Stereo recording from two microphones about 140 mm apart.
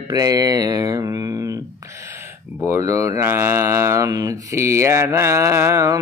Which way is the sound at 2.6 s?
20° right (ahead or behind).